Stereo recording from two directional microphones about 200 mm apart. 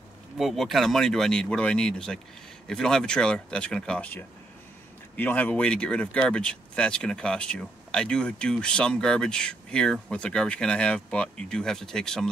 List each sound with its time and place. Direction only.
0.4 s speech: centre (ahead or behind)